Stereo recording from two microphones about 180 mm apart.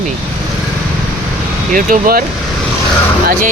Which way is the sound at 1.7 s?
50° right (ahead or behind).